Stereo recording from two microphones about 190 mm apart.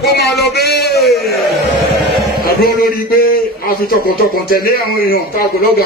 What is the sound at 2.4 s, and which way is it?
A man's voice, 50° left (ahead or behind).